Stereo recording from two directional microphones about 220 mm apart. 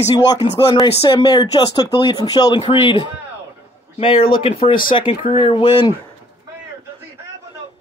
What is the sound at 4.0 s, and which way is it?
Speech, 25° left (ahead or behind).